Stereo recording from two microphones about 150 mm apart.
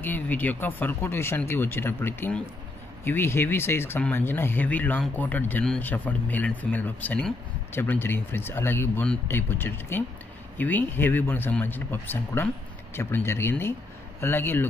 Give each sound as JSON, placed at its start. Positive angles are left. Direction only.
{"t": 0.0, "sound": "speech", "side_deg": 10}